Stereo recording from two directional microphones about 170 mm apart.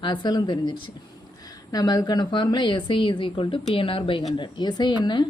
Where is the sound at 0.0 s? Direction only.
25° left (ahead or behind).